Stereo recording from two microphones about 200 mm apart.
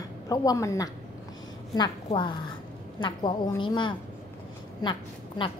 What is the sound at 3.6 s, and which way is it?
A woman's voice, 25° left (ahead or behind).